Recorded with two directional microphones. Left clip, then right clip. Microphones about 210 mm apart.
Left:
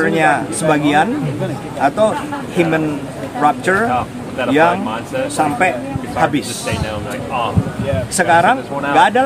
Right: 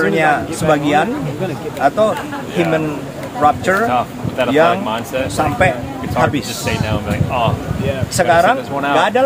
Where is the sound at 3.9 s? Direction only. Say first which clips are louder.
Right 2 dB; 50° right (ahead or behind).